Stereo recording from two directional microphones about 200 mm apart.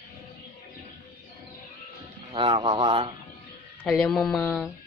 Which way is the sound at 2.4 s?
25° right (ahead or behind).